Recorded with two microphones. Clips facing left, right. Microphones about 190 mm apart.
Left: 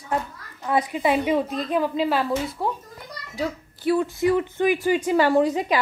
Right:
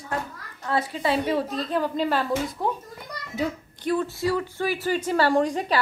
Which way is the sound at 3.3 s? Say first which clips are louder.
Even; 5° left (ahead or behind).